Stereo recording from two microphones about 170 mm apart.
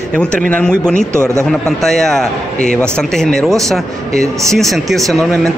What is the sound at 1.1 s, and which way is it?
Speech, 15° right (ahead or behind).